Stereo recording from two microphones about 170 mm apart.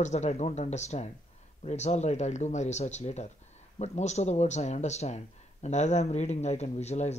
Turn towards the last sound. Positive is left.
turn(degrees=40)  # may be behind; listen again after turning